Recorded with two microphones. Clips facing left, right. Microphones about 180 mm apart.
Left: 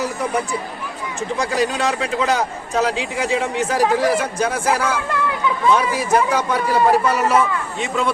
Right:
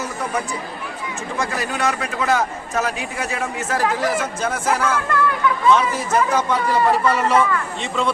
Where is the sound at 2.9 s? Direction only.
90° left.